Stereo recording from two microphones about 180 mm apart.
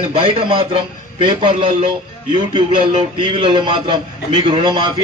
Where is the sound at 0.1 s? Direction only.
30° right (ahead or behind).